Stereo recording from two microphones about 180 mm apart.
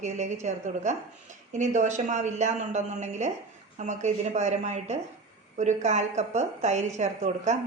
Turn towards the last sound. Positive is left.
turn(degrees=-40)  # may be behind; listen again after turning